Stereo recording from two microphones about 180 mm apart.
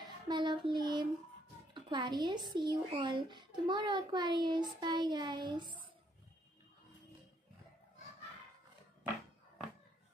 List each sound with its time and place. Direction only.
0.0 s child singing: 25° right (ahead or behind)
1.7 s music: 25° right (ahead or behind)
2.5 s a child's voice: 25° right (ahead or behind)